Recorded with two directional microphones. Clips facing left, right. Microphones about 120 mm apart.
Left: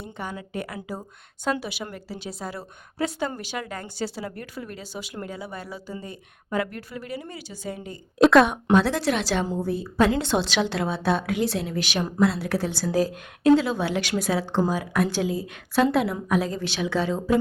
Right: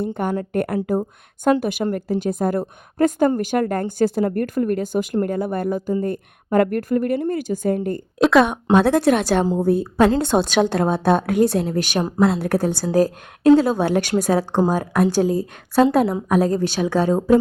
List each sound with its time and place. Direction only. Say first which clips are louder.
0.0 s a woman's voice: right 12 dB; 55° right (ahead or behind)
8.2 s a woman's voice: right 1 dB; centre (ahead or behind)
8.7 s a woman's voice: right 7 dB; 55° right (ahead or behind)